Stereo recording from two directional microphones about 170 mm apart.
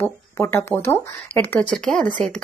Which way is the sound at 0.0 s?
10° left (ahead or behind).